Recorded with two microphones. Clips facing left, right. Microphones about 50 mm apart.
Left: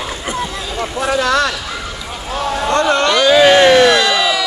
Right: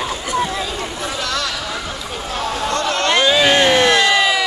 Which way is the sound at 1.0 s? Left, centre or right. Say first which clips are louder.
Left 11 dB; left.